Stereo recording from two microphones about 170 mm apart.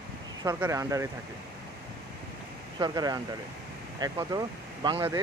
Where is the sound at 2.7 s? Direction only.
25° right (ahead or behind).